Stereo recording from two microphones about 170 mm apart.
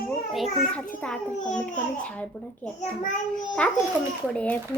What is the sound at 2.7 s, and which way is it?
Speech, 45° left (ahead or behind).